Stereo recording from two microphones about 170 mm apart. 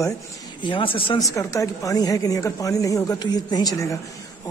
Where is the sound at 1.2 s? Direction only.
20° left (ahead or behind).